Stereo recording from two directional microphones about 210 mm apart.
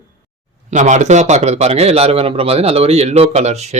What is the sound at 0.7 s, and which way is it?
Speech, 35° right (ahead or behind).